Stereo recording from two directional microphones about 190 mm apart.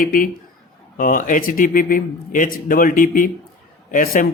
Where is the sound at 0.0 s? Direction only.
45° left (ahead or behind).